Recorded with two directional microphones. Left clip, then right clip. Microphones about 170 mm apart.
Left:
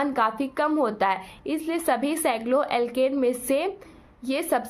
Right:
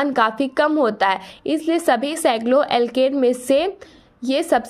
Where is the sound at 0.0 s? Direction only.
35° right (ahead or behind).